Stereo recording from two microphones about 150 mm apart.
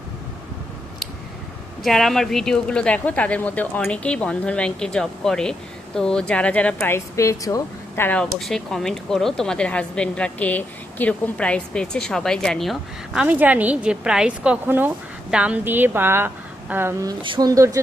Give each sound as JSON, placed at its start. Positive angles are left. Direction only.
{"t": 1.8, "sound": "speech", "side_deg": 0}
{"t": 13.2, "sound": "a woman's voice", "side_deg": -10}
{"t": 17.1, "sound": "speech", "side_deg": -30}